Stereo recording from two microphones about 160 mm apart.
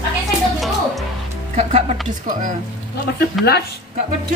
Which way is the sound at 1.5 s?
45° right (ahead or behind).